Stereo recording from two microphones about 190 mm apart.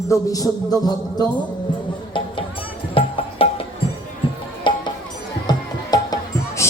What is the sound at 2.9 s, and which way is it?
Music, 30° left (ahead or behind).